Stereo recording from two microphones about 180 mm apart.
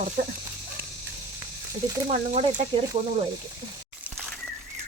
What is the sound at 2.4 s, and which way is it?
Speech, 30° right (ahead or behind).